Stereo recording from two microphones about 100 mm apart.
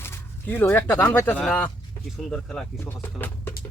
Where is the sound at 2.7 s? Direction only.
20° left (ahead or behind).